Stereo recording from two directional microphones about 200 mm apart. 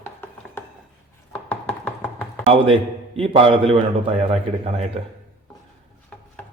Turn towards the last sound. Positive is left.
turn(degrees=5)  # may be behind; listen again after turning